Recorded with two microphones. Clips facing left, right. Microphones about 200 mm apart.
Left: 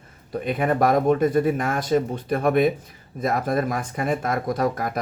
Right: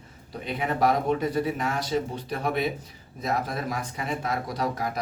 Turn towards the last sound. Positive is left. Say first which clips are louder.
# left 5 dB
turn(degrees=50)  # may be behind; listen again after turning